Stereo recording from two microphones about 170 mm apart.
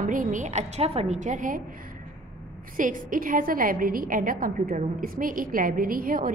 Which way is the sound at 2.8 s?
55° right (ahead or behind).